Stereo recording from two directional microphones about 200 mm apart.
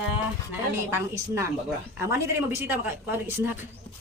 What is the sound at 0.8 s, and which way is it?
Speech, 10° right (ahead or behind).